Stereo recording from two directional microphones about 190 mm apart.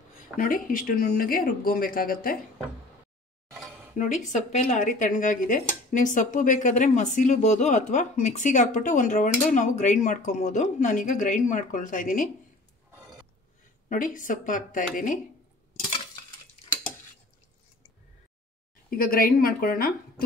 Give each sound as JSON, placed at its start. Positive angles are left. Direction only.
{"t": 0.4, "sound": "speech", "side_deg": 45}
{"t": 3.9, "sound": "speech", "side_deg": 40}
{"t": 13.8, "sound": "speech", "side_deg": 45}
{"t": 18.9, "sound": "speech", "side_deg": 50}